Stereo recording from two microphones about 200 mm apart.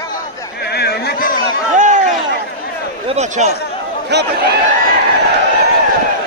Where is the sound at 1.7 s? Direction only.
40° right (ahead or behind).